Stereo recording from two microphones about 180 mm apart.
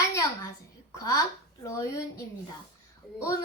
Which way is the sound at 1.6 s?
15° left (ahead or behind).